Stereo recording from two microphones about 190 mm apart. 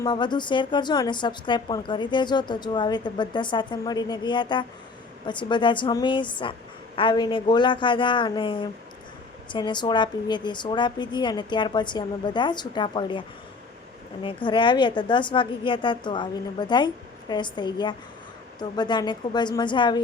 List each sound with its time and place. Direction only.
0.0 s a woman's voice: 25° left (ahead or behind)